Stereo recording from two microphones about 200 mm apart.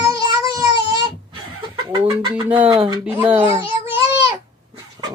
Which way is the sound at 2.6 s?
25° right (ahead or behind).